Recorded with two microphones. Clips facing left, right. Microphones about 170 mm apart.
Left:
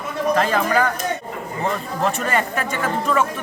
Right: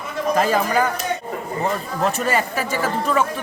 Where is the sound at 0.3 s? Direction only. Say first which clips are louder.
Right 1 dB; 10° right (ahead or behind).